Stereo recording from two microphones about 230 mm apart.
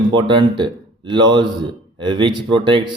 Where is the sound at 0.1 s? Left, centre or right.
Right.